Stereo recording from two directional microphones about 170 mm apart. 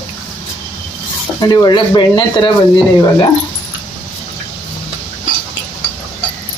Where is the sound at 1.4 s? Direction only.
25° left (ahead or behind).